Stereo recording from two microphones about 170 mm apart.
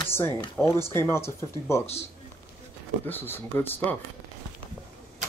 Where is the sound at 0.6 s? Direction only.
10° left (ahead or behind).